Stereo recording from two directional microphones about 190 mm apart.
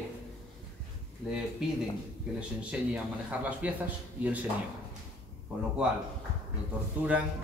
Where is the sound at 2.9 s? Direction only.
5° right (ahead or behind).